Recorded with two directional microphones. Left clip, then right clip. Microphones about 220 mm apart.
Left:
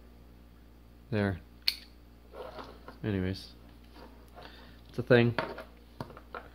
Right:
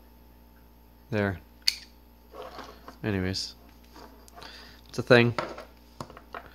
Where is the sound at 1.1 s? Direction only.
15° right (ahead or behind).